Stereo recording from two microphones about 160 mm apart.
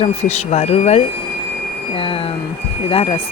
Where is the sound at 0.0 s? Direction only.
40° left (ahead or behind).